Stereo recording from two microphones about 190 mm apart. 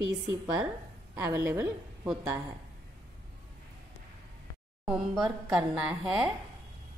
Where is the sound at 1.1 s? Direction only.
10° right (ahead or behind).